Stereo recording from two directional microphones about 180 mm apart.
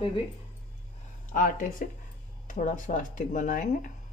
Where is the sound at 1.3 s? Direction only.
50° left (ahead or behind).